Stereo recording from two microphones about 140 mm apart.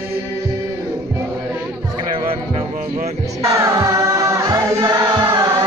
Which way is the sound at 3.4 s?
25° right (ahead or behind).